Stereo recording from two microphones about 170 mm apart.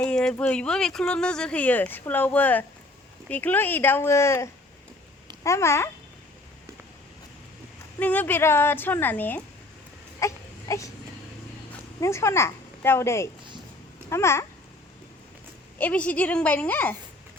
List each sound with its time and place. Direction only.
0.0 s speech: 5° left (ahead or behind)
7.9 s speech: 10° left (ahead or behind)
10.2 s baby cry: 20° left (ahead or behind)
11.9 s a woman's voice: 15° left (ahead or behind)
15.8 s speech: 10° left (ahead or behind)